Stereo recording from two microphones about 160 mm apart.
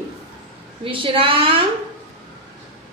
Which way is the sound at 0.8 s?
35° right (ahead or behind).